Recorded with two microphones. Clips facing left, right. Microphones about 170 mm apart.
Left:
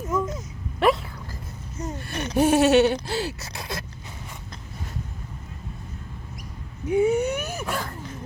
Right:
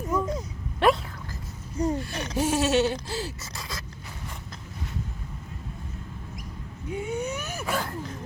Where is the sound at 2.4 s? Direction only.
60° left (ahead or behind).